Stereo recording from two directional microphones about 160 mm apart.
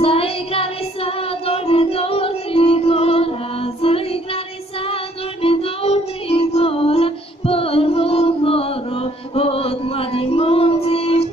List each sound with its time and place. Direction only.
0.0 s child singing: 35° left (ahead or behind)
5.4 s music: 35° left (ahead or behind)